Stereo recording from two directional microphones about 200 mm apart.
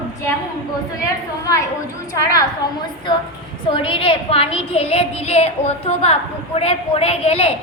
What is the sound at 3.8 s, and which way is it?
A woman's voice, 25° left (ahead or behind).